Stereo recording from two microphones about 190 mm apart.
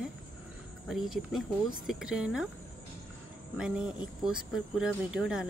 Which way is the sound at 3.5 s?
5° right (ahead or behind).